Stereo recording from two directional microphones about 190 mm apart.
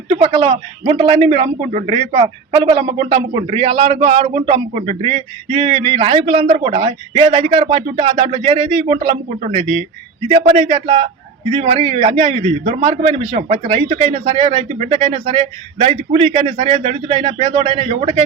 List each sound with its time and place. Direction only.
0.1 s a man's voice: 30° right (ahead or behind)